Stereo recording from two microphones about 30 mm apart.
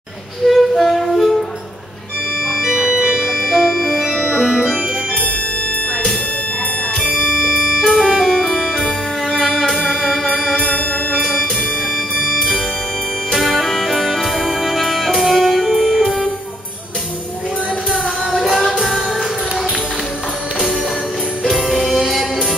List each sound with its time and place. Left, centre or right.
0.5 s music: centre
2.5 s organ: centre
4.1 s organ: centre
7.4 s music: right
8.0 s music: centre
8.3 s music: centre
13.3 s music: centre
15.2 s music: centre
15.5 s music: centre
18.3 s music: centre
21.8 s music: right